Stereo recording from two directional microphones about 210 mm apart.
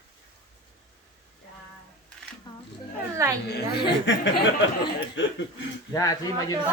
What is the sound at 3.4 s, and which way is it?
Speech, 50° left (ahead or behind).